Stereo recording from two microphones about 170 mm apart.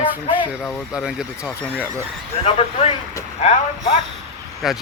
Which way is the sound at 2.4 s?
35° left (ahead or behind).